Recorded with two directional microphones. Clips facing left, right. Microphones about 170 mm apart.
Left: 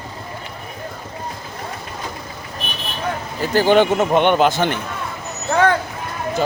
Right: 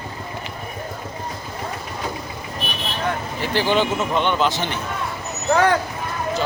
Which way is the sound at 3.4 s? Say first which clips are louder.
Left 6 dB; 45° left (ahead or behind).